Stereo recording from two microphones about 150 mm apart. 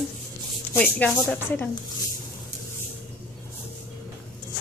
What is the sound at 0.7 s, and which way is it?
Speech, 10° left (ahead or behind).